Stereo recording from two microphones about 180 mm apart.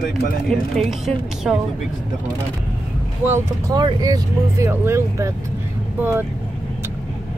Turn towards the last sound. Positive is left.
turn(degrees=-10)  # may be behind; listen again after turning